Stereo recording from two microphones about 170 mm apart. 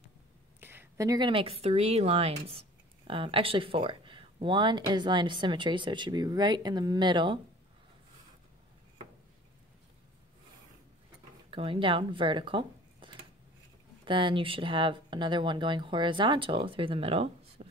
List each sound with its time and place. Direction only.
0.6 s speech: 10° right (ahead or behind); by 7.3 s 25° right (ahead or behind)
11.5 s speech: 30° right (ahead or behind)
17.6 s a sound: 40° right (ahead or behind)